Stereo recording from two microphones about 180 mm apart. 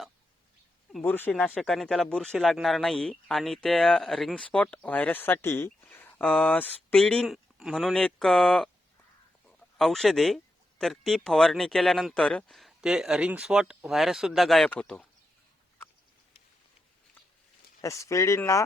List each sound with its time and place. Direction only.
0.9 s speech: 10° left (ahead or behind)
17.7 s speech: 15° left (ahead or behind)